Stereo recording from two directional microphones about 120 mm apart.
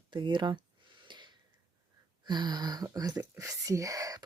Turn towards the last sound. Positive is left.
turn(degrees=-30)  # may be behind; listen again after turning